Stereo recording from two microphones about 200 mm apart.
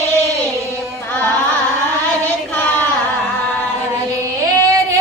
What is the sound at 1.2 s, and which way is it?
Carnatic music, 20° right (ahead or behind).